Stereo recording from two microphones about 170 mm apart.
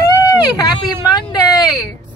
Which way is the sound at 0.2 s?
20° left (ahead or behind).